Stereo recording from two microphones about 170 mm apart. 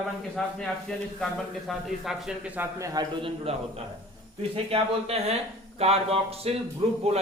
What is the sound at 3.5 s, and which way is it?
Speech, 35° right (ahead or behind).